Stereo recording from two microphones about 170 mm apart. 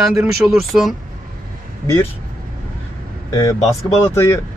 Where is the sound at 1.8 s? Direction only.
15° left (ahead or behind).